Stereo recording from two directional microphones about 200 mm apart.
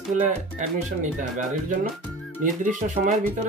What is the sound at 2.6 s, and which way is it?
Speech, 40° right (ahead or behind).